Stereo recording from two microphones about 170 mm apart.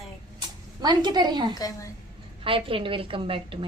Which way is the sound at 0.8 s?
25° right (ahead or behind).